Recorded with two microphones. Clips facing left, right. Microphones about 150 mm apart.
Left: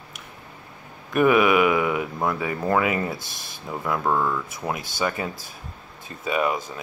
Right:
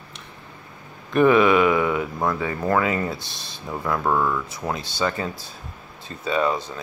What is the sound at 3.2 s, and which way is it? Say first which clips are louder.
Speech: right 1 dB; 20° right (ahead or behind).